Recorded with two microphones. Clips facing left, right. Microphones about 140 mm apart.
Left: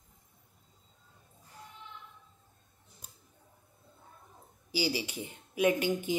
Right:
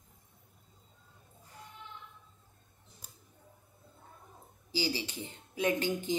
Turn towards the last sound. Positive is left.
turn(degrees=15)  # may be behind; listen again after turning